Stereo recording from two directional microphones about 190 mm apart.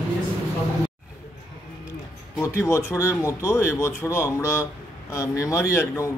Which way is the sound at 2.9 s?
15° left (ahead or behind).